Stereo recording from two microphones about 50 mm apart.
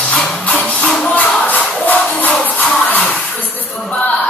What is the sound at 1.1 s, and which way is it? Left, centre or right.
Music, left.